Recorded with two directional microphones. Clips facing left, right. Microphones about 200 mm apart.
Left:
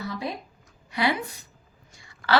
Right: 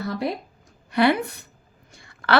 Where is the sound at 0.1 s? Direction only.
65° right (ahead or behind).